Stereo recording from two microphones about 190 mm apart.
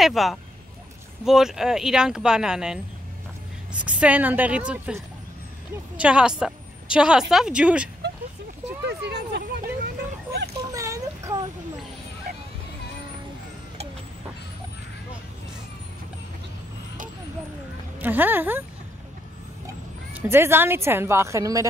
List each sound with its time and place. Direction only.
0.0 s speech: centre (ahead or behind)
3.8 s speech: 5° right (ahead or behind)
8.8 s vehicle: 60° right (ahead or behind)
10.7 s a sound: 15° right (ahead or behind)
18.0 s speech: 10° right (ahead or behind)
20.2 s speech: 10° right (ahead or behind)